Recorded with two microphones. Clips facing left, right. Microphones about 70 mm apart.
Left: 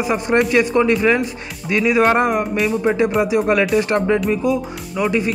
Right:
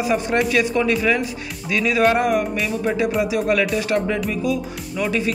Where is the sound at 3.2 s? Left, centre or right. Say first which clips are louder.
Left 3 dB; left.